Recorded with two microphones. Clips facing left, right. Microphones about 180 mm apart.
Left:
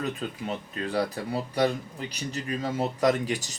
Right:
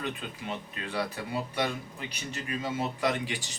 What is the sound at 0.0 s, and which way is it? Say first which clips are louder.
Speech: left 5 dB; 40° left (ahead or behind).